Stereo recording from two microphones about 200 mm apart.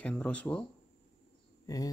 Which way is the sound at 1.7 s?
15° left (ahead or behind).